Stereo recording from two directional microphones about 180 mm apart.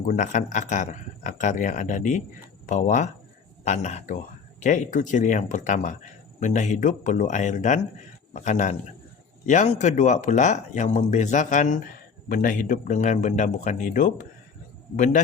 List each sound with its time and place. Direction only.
0.0 s a man's voice: 45° left (ahead or behind)